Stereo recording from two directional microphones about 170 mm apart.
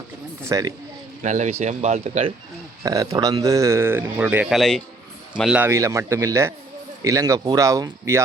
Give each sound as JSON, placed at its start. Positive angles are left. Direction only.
{"t": 0.4, "sound": "speech", "side_deg": -20}
{"t": 1.2, "sound": "speech", "side_deg": -45}
{"t": 2.8, "sound": "speech", "side_deg": -20}